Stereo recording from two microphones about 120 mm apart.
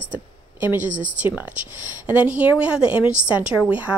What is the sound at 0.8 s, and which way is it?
Speech, 90° right.